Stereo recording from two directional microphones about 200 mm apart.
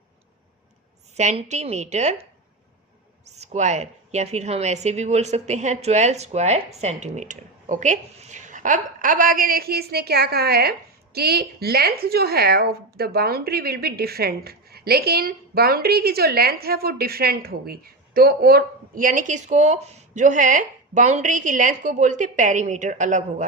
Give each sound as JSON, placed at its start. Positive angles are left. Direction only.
{"t": 1.1, "sound": "a woman's voice", "side_deg": -35}
{"t": 3.2, "sound": "a woman's voice", "side_deg": -35}